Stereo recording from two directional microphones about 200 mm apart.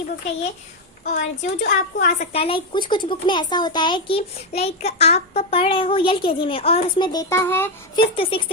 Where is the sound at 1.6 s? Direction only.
55° left (ahead or behind).